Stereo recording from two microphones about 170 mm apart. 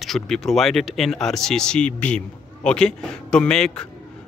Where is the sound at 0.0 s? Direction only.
Centre (ahead or behind).